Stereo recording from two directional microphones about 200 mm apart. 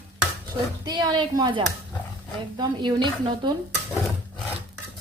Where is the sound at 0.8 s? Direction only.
20° right (ahead or behind).